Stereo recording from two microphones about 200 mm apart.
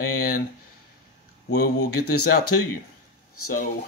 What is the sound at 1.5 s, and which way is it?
Speech, 55° left (ahead or behind).